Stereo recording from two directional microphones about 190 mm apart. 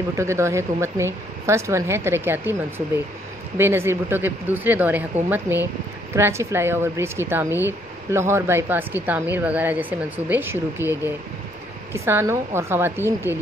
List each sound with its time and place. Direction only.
0.1 s speech: 15° right (ahead or behind)
3.5 s speech: 10° right (ahead or behind)